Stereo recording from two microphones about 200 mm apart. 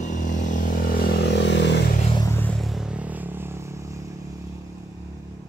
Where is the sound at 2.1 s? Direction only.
15° left (ahead or behind); by 4.4 s 15° right (ahead or behind).